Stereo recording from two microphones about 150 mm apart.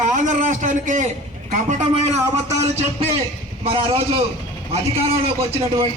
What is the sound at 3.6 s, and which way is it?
Speech, 40° right (ahead or behind).